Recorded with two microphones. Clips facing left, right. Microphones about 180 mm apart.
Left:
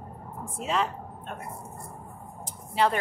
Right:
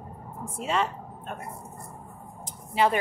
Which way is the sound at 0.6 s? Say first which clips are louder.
Right 1 dB; centre (ahead or behind).